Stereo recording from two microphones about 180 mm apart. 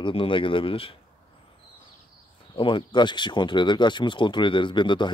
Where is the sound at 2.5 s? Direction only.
25° left (ahead or behind).